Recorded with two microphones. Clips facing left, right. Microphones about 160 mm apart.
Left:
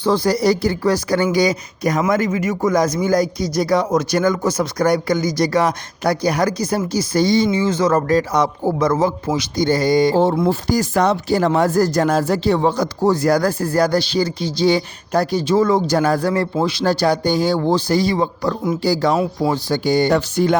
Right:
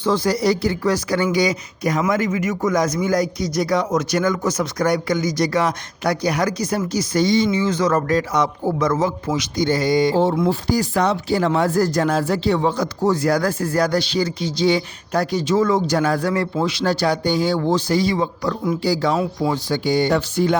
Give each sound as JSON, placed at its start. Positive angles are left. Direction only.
{"t": 0.0, "sound": "speech", "side_deg": 35}
{"t": 19.1, "sound": "speech", "side_deg": 25}
{"t": 19.5, "sound": "speech", "side_deg": 40}